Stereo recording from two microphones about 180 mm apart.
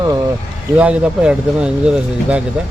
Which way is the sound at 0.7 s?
5° right (ahead or behind).